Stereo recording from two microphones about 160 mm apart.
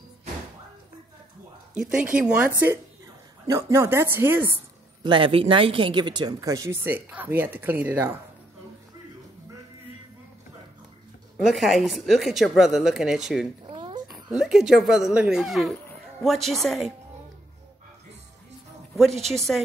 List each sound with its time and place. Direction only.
1.8 s speech: 5° right (ahead or behind)
5.0 s speech: 30° right (ahead or behind); by 8.2 s 15° right (ahead or behind)
11.3 s speech: centre (ahead or behind)
13.7 s a sound: 30° right (ahead or behind)
14.0 s speech: centre (ahead or behind)
18.9 s speech: centre (ahead or behind)